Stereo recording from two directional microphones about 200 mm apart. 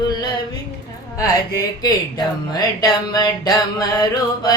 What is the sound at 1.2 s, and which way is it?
Speech, 20° left (ahead or behind).